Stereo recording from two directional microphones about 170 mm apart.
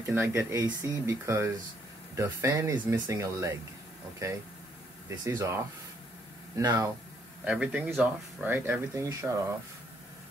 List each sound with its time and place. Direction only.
0.1 s speech: 15° right (ahead or behind)
7.4 s speech: 5° right (ahead or behind)